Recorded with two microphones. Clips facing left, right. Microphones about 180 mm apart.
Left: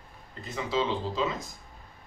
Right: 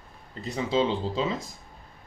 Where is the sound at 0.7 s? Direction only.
30° right (ahead or behind).